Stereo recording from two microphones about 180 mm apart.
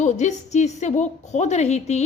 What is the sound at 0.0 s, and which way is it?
A woman's voice, 40° left (ahead or behind).